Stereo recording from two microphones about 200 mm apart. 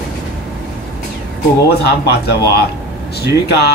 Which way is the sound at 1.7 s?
55° left (ahead or behind).